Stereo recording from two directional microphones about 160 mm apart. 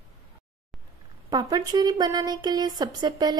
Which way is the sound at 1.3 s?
25° right (ahead or behind).